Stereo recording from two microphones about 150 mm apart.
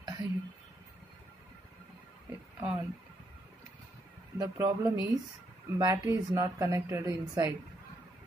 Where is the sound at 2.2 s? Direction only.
10° right (ahead or behind).